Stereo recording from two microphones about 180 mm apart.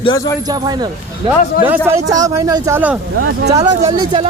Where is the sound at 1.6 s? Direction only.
10° right (ahead or behind).